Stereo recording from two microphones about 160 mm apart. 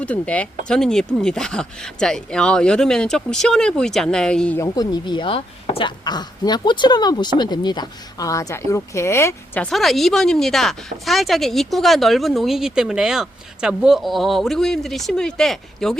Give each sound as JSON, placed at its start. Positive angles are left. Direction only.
{"t": 0.0, "sound": "speech", "side_deg": 10}
{"t": 4.6, "sound": "speech", "side_deg": 25}
{"t": 9.6, "sound": "speech", "side_deg": 0}